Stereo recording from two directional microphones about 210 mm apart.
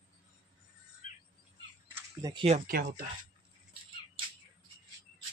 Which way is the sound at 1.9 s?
20° right (ahead or behind).